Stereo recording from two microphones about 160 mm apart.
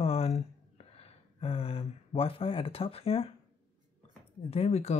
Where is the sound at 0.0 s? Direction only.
40° left (ahead or behind).